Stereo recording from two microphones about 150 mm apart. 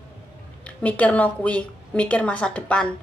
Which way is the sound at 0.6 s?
10° left (ahead or behind).